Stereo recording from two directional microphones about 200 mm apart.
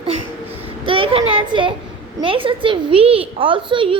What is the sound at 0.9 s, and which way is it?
A woman's voice, 25° right (ahead or behind).